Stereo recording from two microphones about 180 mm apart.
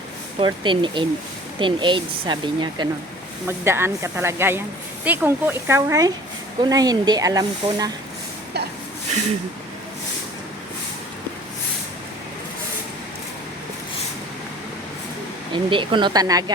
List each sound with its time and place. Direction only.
0.3 s speech: 25° right (ahead or behind)
3.4 s speech: 15° right (ahead or behind)
15.5 s speech: 25° right (ahead or behind)